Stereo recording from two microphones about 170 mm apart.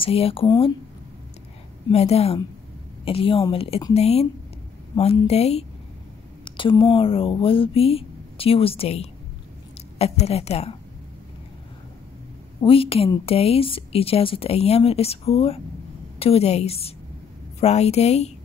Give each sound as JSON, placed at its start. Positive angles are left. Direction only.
{"t": 0.0, "sound": "speech", "side_deg": 35}
{"t": 1.9, "sound": "speech", "side_deg": 40}
{"t": 12.6, "sound": "speech", "side_deg": 35}